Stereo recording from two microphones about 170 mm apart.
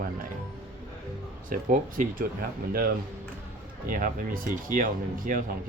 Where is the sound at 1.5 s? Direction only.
50° right (ahead or behind).